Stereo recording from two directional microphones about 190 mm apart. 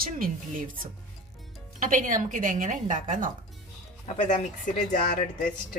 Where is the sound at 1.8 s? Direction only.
45° right (ahead or behind).